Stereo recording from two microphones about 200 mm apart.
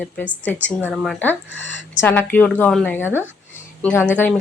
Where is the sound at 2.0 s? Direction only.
10° left (ahead or behind).